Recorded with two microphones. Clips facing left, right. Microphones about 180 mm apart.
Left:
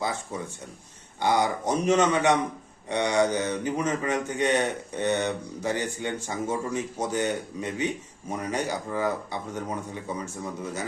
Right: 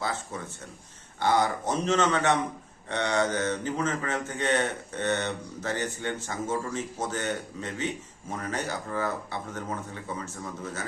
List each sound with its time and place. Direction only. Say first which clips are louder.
0.0 s a man's voice: left 2 dB; 15° left (ahead or behind)